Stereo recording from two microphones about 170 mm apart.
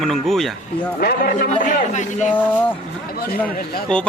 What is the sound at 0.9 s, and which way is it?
Speech, 60° left (ahead or behind).